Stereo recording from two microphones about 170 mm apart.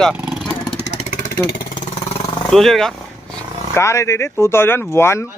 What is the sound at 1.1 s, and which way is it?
Vehicle, 65° left (ahead or behind).